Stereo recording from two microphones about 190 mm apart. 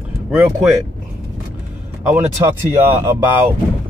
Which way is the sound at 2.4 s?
15° right (ahead or behind).